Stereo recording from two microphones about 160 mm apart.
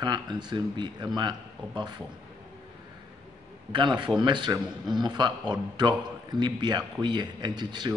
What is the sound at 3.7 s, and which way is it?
A man's voice, 30° right (ahead or behind).